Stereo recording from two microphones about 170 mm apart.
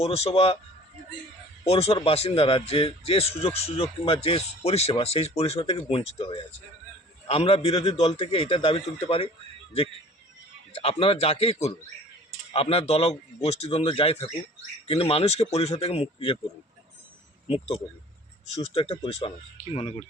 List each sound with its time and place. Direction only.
0.0 s a man's voice: 35° left (ahead or behind)
1.6 s a man's voice: 35° left (ahead or behind)
10.7 s a man's voice: 40° left (ahead or behind)
18.7 s a man's voice: 30° left (ahead or behind)